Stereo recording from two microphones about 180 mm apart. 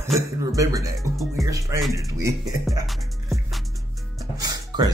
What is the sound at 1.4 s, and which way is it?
Speech, 20° right (ahead or behind).